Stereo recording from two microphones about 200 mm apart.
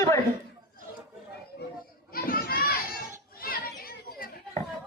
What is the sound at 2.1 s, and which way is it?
Children playing, 45° left (ahead or behind).